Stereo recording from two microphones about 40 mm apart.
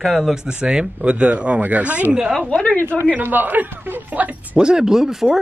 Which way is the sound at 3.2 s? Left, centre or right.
Right.